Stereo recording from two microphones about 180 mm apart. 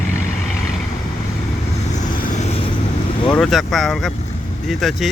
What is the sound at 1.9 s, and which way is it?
Vehicle, 45° left (ahead or behind).